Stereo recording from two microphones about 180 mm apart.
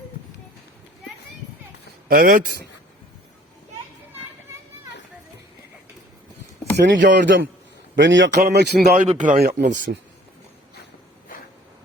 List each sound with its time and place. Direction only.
2.0 s a man's voice: 50° right (ahead or behind)
6.7 s a man's voice: 80° right; by 9.0 s 60° right (ahead or behind)
9.0 s a man's voice: 45° right (ahead or behind)